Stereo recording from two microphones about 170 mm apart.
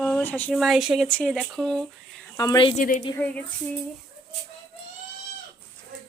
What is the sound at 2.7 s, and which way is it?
Speech, 50° left (ahead or behind).